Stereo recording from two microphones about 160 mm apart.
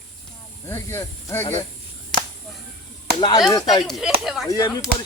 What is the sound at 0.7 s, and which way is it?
Speech, 15° left (ahead or behind).